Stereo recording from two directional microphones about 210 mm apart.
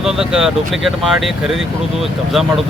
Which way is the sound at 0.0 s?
Centre (ahead or behind).